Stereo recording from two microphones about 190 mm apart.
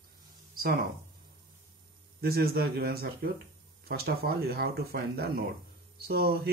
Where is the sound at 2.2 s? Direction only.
55° right (ahead or behind).